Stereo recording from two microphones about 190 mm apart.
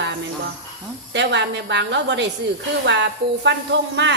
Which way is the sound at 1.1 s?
70° right (ahead or behind).